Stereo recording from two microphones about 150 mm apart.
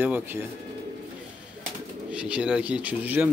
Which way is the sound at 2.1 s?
5° right (ahead or behind).